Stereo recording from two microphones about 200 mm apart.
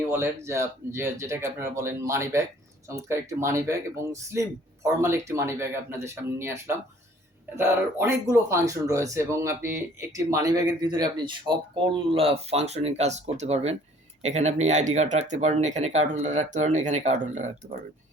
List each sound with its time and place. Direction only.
0.0 s a man's voice: 10° right (ahead or behind); by 17.5 s 35° right (ahead or behind)